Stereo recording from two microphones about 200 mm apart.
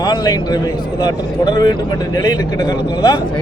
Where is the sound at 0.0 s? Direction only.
20° left (ahead or behind).